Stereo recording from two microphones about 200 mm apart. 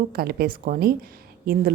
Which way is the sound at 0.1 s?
50° right (ahead or behind).